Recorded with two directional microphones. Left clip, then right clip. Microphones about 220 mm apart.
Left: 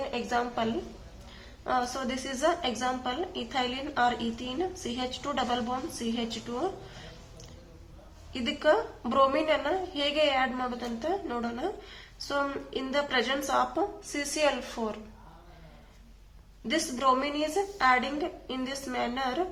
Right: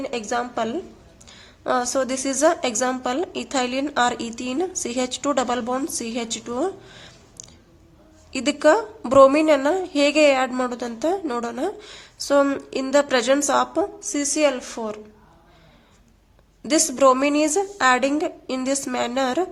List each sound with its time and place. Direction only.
0.1 s a woman's voice: 40° right (ahead or behind)
1.6 s a woman's voice: 55° right (ahead or behind)
8.3 s a woman's voice: 55° right (ahead or behind)
16.6 s a woman's voice: 60° right (ahead or behind)